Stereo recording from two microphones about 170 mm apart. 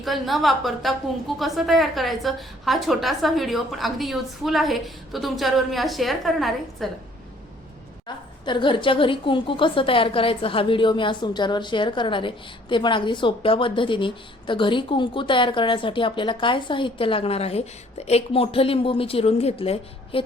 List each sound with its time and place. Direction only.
0.0 s a woman's voice: centre (ahead or behind)
8.0 s a woman's voice: 25° left (ahead or behind)